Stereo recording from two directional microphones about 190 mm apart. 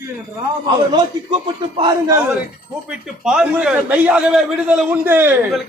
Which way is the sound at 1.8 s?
15° right (ahead or behind).